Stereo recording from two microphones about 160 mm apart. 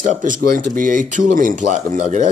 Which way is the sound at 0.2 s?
55° right (ahead or behind).